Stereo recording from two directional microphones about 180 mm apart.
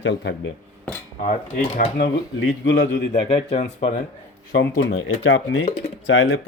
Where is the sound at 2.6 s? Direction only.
90° left.